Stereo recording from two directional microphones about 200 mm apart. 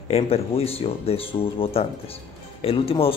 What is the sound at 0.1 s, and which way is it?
Speech, 30° left (ahead or behind).